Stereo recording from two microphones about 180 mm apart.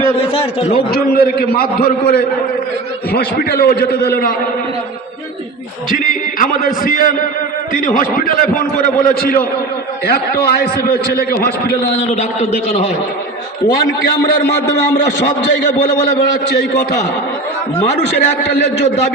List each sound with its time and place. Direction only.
0.2 s a man's voice: 35° left (ahead or behind)
1.1 s a man's voice: 60° left (ahead or behind)
6.0 s a sound: 50° left (ahead or behind)
6.8 s a man's voice: 50° left (ahead or behind)
11.9 s a man's voice: 35° left (ahead or behind)